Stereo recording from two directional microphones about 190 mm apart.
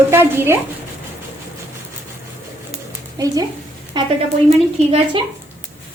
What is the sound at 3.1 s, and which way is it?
Speech, 20° right (ahead or behind).